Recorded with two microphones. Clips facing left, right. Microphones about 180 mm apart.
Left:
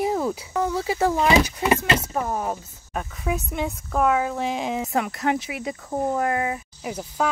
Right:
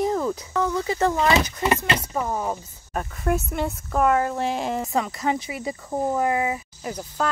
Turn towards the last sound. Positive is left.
turn(degrees=5)  # may be behind; listen again after turning